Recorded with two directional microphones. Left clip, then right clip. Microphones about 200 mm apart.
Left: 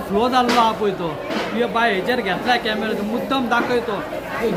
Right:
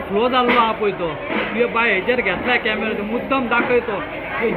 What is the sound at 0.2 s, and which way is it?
Speech, 40° left (ahead or behind).